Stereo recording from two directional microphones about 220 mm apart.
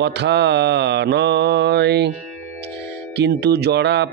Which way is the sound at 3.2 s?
50° right (ahead or behind).